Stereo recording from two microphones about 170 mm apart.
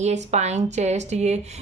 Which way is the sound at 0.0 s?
40° right (ahead or behind).